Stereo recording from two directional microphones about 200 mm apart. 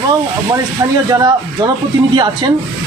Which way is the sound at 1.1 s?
20° right (ahead or behind).